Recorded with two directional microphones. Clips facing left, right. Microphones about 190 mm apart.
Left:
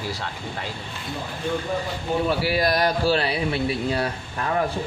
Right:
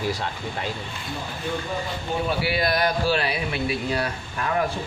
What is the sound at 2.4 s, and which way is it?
Speech, 40° left (ahead or behind).